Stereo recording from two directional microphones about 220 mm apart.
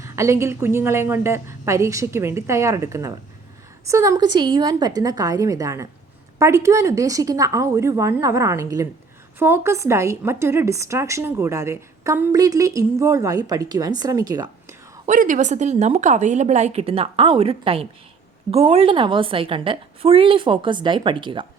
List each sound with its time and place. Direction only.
0.0 s a woman's voice: 15° right (ahead or behind)
15.0 s a woman's voice: 35° right (ahead or behind)